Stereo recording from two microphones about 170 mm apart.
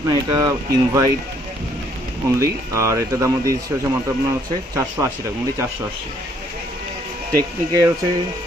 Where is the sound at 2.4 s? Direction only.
20° right (ahead or behind).